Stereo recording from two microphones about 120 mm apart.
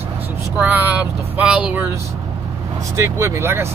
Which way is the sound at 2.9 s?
25° right (ahead or behind).